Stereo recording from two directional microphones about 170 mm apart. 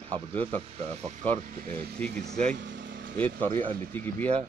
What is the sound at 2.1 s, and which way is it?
Speech, 75° right (ahead or behind).